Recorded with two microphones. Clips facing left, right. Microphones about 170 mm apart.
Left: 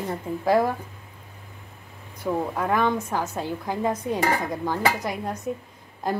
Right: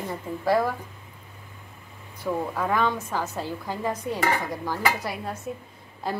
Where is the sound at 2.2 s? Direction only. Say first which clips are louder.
Left 2 dB; 10° left (ahead or behind).